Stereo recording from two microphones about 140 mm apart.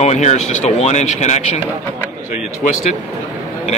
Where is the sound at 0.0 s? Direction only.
55° left (ahead or behind).